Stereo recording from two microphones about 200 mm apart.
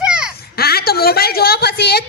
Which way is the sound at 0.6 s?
50° left (ahead or behind).